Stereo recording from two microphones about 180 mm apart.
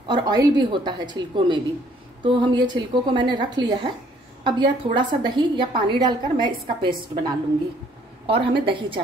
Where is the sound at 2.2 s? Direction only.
25° right (ahead or behind).